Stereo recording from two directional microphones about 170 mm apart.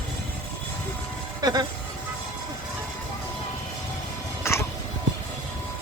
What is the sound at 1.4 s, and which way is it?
Music, 25° right (ahead or behind).